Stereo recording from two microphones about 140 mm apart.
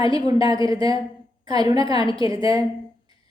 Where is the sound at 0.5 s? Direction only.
25° right (ahead or behind).